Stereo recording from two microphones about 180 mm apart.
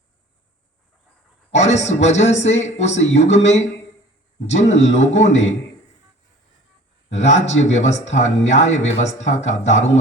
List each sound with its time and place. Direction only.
1.5 s speech: 40° left (ahead or behind)
7.1 s speech: 40° left (ahead or behind)